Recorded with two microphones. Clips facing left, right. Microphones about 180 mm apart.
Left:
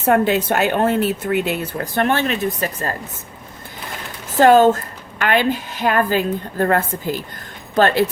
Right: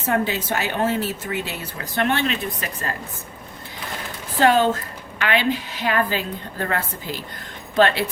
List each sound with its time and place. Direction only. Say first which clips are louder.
0.1 s speech: left 7 dB; 60° left (ahead or behind)
4.4 s a woman's voice: left 6 dB; 45° left (ahead or behind)